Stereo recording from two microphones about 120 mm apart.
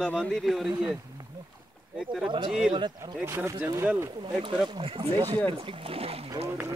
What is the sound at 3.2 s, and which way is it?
Speech, 20° right (ahead or behind).